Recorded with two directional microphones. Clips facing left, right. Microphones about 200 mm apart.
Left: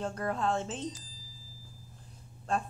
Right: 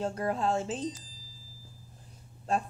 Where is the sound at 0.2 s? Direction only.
25° right (ahead or behind).